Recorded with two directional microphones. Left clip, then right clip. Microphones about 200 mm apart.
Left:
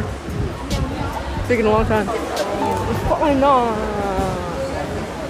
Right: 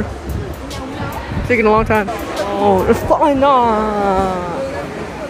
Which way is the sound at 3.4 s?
10° right (ahead or behind).